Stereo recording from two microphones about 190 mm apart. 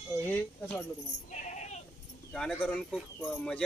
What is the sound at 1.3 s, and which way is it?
Sheep, 40° left (ahead or behind).